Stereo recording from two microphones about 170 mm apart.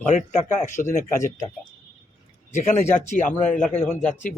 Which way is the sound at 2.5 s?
45° left (ahead or behind).